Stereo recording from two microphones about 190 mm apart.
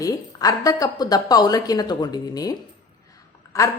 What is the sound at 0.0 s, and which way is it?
A woman's voice, 20° left (ahead or behind).